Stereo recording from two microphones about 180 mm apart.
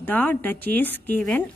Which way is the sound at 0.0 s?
10° left (ahead or behind).